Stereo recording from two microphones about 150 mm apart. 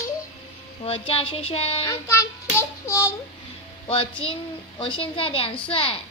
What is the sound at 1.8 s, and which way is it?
Child singing, 20° left (ahead or behind).